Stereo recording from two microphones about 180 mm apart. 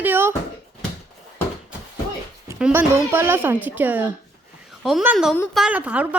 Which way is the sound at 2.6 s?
10° right (ahead or behind).